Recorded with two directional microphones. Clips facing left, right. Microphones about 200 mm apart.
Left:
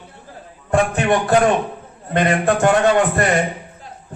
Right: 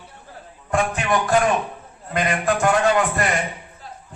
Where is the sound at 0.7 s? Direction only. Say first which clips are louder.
Left 5 dB; 35° left (ahead or behind).